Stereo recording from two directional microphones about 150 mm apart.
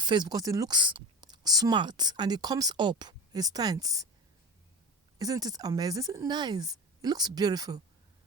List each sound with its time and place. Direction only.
0.0 s speech: 30° right (ahead or behind)
5.2 s speech: 25° right (ahead or behind)